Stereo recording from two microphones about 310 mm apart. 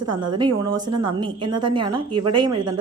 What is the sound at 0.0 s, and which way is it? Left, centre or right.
Speech, right.